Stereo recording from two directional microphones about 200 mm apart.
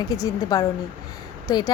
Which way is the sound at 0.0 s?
15° left (ahead or behind).